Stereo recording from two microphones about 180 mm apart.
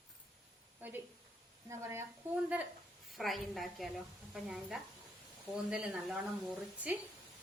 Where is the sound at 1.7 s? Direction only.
15° right (ahead or behind).